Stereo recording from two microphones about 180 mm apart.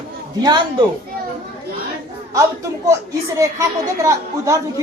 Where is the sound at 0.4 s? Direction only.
25° right (ahead or behind).